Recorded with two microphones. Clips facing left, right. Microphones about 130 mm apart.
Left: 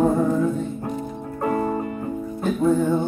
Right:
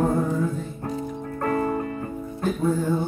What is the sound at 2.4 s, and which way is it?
Music, 20° left (ahead or behind).